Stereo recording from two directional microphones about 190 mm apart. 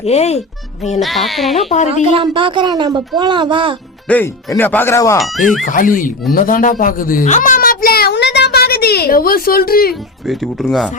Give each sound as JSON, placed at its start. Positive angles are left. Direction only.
{"t": 0.0, "sound": "speech", "side_deg": 35}
{"t": 0.9, "sound": "speech", "side_deg": 0}
{"t": 1.5, "sound": "speech", "side_deg": 35}
{"t": 2.0, "sound": "a woman's voice", "side_deg": -30}
{"t": 4.1, "sound": "speech", "side_deg": 10}
{"t": 5.6, "sound": "speech", "side_deg": 45}
{"t": 6.3, "sound": "a sound", "side_deg": 45}
{"t": 10.2, "sound": "speech", "side_deg": 0}